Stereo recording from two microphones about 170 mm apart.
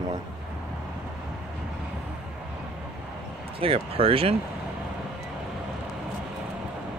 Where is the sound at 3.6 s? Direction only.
35° right (ahead or behind).